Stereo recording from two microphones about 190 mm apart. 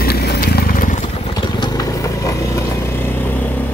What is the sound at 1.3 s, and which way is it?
Vehicle, 25° left (ahead or behind).